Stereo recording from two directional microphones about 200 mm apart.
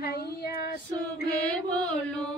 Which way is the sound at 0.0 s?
50° left (ahead or behind).